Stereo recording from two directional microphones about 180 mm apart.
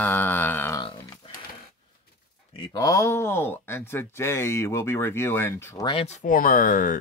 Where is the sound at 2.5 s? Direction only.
20° left (ahead or behind).